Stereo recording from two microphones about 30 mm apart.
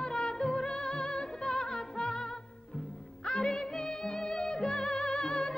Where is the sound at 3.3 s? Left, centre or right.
Left.